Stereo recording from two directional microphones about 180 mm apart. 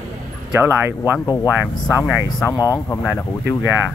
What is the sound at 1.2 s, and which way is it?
Speech, 20° left (ahead or behind).